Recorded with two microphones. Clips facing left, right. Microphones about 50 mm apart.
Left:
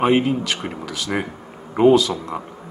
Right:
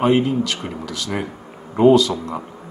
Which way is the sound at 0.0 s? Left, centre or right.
Left.